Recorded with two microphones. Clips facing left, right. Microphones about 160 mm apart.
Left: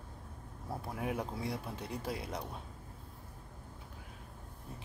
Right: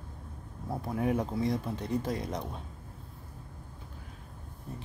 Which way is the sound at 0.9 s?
5° left (ahead or behind).